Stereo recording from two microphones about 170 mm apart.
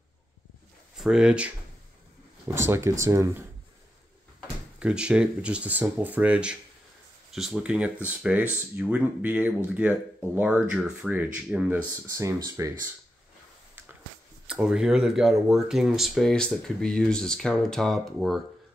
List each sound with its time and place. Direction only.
0.9 s speech: 5° right (ahead or behind)
4.7 s speech: 5° right (ahead or behind)
14.5 s speech: 5° right (ahead or behind)